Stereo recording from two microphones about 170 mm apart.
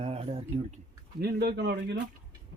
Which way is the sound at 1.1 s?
75° right (ahead or behind).